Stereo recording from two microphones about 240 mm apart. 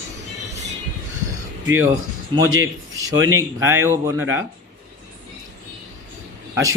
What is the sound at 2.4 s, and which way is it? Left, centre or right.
Speech, right.